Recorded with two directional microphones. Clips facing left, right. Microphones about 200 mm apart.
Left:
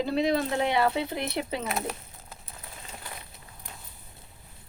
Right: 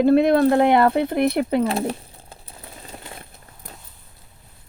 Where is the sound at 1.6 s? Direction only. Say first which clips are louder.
Right 10 dB; 30° right (ahead or behind).